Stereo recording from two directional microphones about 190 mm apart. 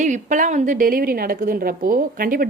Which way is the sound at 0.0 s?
40° right (ahead or behind).